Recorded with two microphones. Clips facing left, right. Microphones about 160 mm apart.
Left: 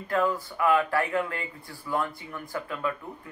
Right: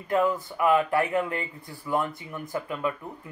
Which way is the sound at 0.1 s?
20° right (ahead or behind).